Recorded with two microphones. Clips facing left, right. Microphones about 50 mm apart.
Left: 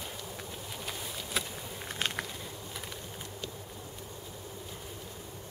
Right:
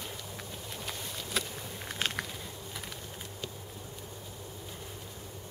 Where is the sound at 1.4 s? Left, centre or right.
Centre.